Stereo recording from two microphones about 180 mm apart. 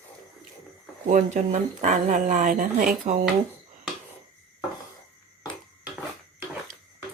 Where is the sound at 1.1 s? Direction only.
45° right (ahead or behind).